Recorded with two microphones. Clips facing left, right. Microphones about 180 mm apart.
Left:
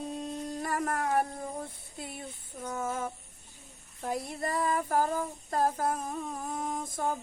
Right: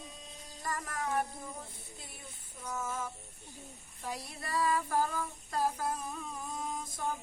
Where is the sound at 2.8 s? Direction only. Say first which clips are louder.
Left 5 dB; 55° left (ahead or behind).